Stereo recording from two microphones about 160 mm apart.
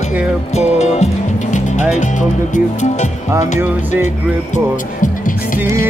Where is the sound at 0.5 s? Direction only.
45° left (ahead or behind).